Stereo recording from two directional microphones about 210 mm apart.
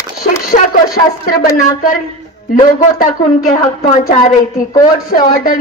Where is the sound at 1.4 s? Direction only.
40° left (ahead or behind).